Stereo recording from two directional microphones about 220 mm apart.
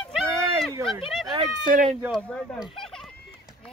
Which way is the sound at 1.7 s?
35° right (ahead or behind).